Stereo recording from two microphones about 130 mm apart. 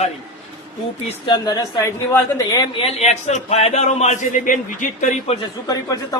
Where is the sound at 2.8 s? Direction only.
55° left (ahead or behind); by 5.1 s 75° left (ahead or behind).